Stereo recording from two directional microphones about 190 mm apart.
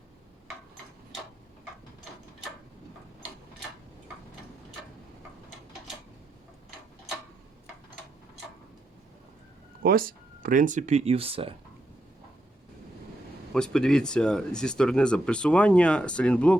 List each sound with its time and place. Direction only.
9.8 s speech: 50° right (ahead or behind); by 11.5 s 30° right (ahead or behind)
13.5 s speech: 5° left (ahead or behind)